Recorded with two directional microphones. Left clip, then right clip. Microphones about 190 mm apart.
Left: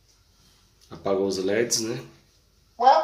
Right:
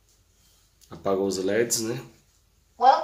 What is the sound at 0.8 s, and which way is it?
Speech, 20° right (ahead or behind).